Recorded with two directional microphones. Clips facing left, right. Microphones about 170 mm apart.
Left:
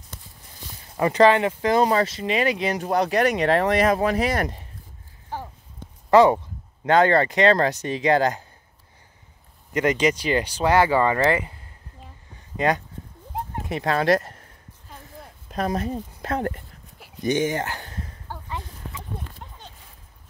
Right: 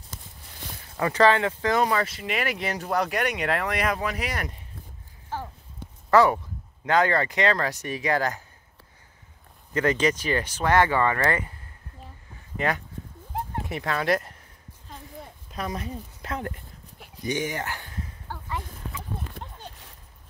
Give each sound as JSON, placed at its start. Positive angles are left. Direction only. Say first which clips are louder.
{"t": 0.9, "sound": "speech", "louder": "left 4 dB", "side_deg": 20}
{"t": 5.3, "sound": "a sound", "louder": "even", "side_deg": 15}
{"t": 6.0, "sound": "speech", "louder": "left 4 dB", "side_deg": 20}
{"t": 9.8, "sound": "speech", "louder": "left 2 dB", "side_deg": 15}
{"t": 10.3, "sound": "speech", "louder": "left 4 dB", "side_deg": 35}
{"t": 10.6, "sound": "speech", "louder": "left 2 dB", "side_deg": 10}
{"t": 11.0, "sound": "speech", "louder": "left 4 dB", "side_deg": 20}
{"t": 12.5, "sound": "speech", "louder": "left 5 dB", "side_deg": 35}
{"t": 15.5, "sound": "speech", "louder": "left 7 dB", "side_deg": 50}
{"t": 17.3, "sound": "speech", "louder": "left 6 dB", "side_deg": 25}